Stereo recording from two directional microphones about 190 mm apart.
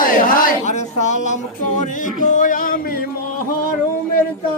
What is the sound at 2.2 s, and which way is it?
Music, 45° left (ahead or behind).